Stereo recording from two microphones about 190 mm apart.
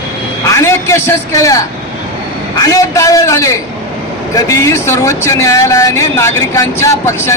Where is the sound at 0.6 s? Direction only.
15° left (ahead or behind).